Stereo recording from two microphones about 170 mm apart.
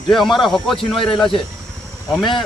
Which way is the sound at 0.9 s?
30° left (ahead or behind).